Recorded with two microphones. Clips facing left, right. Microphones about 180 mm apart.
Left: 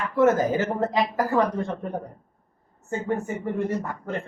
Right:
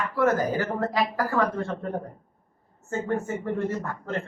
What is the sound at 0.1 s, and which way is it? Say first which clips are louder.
Speech: left 4 dB; 20° left (ahead or behind).